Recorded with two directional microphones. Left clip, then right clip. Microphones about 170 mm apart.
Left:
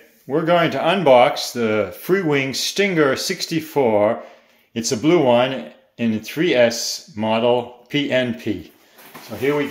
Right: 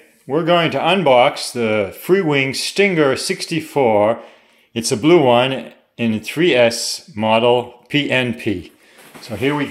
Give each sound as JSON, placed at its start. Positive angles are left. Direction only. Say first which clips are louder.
{"t": 0.3, "sound": "speech", "louder": "right 2 dB", "side_deg": -25}
{"t": 9.5, "sound": "speech", "louder": "even", "side_deg": -90}